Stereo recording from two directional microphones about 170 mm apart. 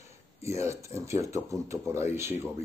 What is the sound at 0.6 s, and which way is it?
Speech, 15° right (ahead or behind).